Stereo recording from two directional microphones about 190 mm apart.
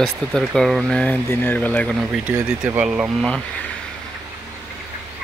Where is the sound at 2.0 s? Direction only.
10° right (ahead or behind).